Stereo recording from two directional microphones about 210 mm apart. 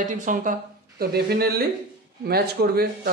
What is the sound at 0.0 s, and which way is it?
Speech, 35° right (ahead or behind).